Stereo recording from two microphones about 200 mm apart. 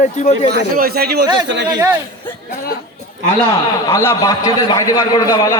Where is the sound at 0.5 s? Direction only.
50° right (ahead or behind).